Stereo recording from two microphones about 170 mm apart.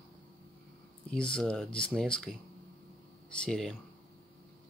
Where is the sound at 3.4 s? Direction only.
5° left (ahead or behind).